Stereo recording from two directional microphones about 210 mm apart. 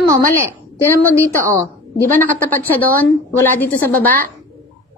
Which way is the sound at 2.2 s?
10° left (ahead or behind).